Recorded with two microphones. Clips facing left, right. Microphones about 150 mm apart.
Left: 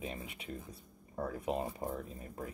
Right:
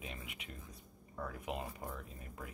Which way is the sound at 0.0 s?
35° left (ahead or behind).